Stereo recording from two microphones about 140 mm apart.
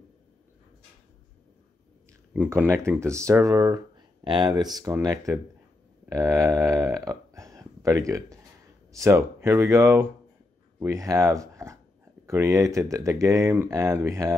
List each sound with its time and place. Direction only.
2.3 s speech: 15° right (ahead or behind)